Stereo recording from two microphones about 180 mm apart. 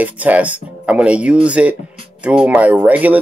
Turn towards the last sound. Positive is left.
turn(degrees=-10)  # may be behind; listen again after turning